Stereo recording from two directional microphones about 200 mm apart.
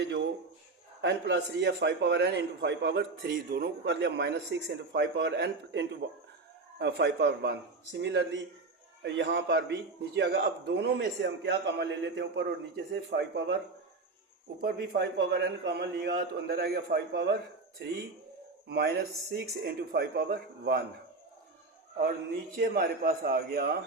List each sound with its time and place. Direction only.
1.0 s a man's voice: 60° right (ahead or behind)
14.6 s a man's voice: 50° right (ahead or behind)
18.7 s a man's voice: 55° right (ahead or behind)
22.0 s a man's voice: 50° right (ahead or behind)